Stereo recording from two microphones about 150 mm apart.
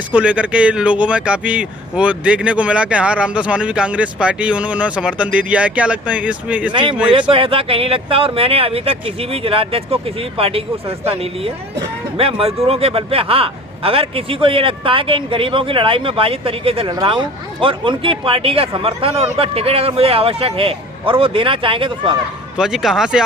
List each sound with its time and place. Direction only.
0.1 s speech: 10° right (ahead or behind)
7.1 s speech: 35° right (ahead or behind)
22.5 s speech: 5° right (ahead or behind)